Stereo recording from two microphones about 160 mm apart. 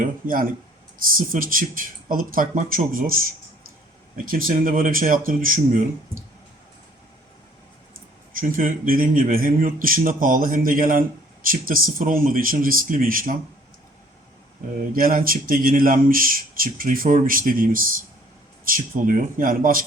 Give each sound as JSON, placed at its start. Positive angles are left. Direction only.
{"t": 0.0, "sound": "speech", "side_deg": -60}
{"t": 4.3, "sound": "speech", "side_deg": -60}
{"t": 8.3, "sound": "speech", "side_deg": -60}
{"t": 14.9, "sound": "speech", "side_deg": -65}